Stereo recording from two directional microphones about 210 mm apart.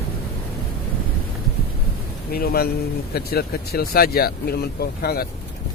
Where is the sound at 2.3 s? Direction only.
45° left (ahead or behind).